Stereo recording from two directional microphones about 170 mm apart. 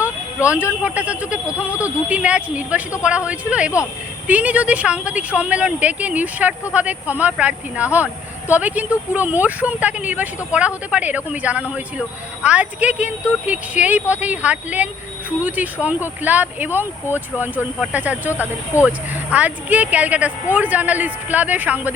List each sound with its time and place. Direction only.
0.5 s speech: 5° right (ahead or behind)
18.3 s speech: 15° left (ahead or behind)
18.9 s speech: 10° right (ahead or behind)